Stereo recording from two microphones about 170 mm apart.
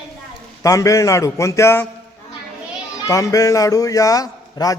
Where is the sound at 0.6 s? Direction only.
20° left (ahead or behind).